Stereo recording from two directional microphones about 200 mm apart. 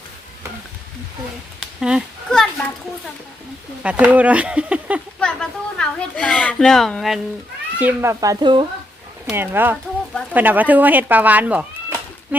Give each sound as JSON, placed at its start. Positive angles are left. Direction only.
{"t": 1.8, "sound": "a sound", "side_deg": 0}
{"t": 3.8, "sound": "speech", "side_deg": -5}
{"t": 7.8, "sound": "speech", "side_deg": -10}
{"t": 9.3, "sound": "speech", "side_deg": -10}